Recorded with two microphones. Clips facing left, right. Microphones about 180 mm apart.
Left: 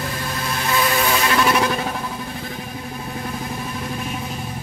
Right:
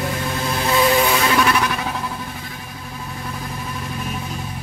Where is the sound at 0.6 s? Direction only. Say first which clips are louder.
Right 4 dB; 25° right (ahead or behind).